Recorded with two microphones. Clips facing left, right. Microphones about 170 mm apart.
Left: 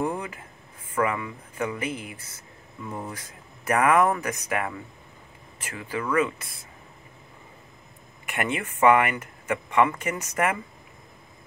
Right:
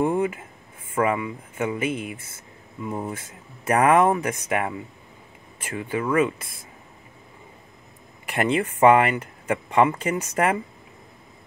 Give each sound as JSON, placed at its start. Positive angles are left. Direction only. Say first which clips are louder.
{"t": 0.0, "sound": "a sound", "louder": "right 7 dB", "side_deg": -25}
{"t": 0.9, "sound": "speech", "louder": "right 3 dB", "side_deg": -25}
{"t": 8.3, "sound": "speech", "louder": "right 6 dB", "side_deg": -30}